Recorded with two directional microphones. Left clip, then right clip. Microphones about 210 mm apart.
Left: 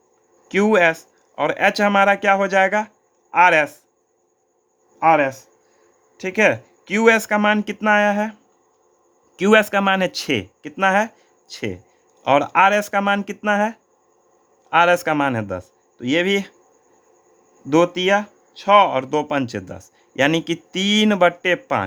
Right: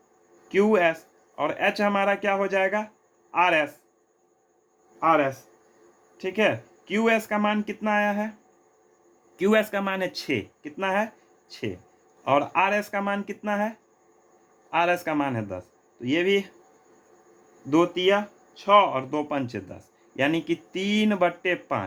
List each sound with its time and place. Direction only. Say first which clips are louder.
0.4 s speech: left 5 dB; 50° left (ahead or behind)
4.9 s speech: left 6 dB; 50° left (ahead or behind)
17.7 s speech: left 5 dB; 50° left (ahead or behind)